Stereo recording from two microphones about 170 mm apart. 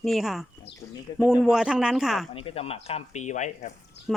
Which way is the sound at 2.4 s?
35° left (ahead or behind).